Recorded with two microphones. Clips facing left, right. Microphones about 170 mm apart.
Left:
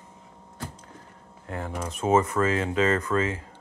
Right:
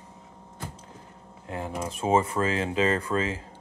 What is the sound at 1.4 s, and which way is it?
Speech, 20° right (ahead or behind).